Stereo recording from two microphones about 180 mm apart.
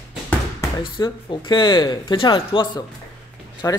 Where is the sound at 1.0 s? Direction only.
25° left (ahead or behind).